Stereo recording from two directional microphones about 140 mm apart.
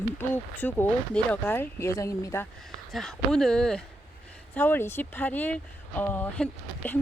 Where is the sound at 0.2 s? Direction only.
15° left (ahead or behind).